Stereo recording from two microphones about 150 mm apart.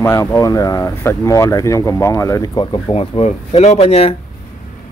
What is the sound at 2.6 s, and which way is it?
Speech, 40° left (ahead or behind).